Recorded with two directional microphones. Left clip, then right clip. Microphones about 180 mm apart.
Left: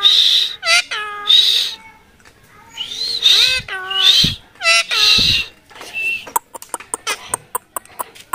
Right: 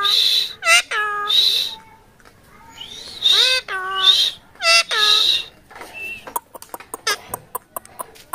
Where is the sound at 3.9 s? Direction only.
10° left (ahead or behind).